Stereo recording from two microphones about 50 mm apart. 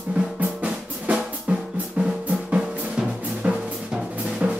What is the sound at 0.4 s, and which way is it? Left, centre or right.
Drum, right.